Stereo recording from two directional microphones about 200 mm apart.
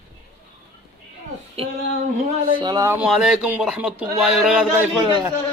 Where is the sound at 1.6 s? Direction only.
30° right (ahead or behind).